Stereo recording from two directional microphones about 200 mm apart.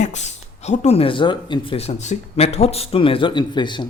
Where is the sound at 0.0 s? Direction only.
35° left (ahead or behind).